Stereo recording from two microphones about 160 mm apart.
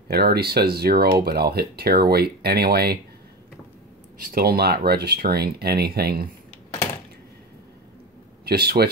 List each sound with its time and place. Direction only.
0.1 s speech: 75° right (ahead or behind)
4.3 s speech: 75° right (ahead or behind)
8.5 s speech: 75° right (ahead or behind)